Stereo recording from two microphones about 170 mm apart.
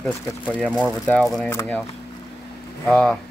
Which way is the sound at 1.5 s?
15° left (ahead or behind).